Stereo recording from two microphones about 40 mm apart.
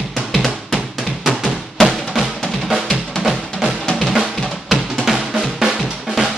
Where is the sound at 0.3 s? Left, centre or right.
Centre.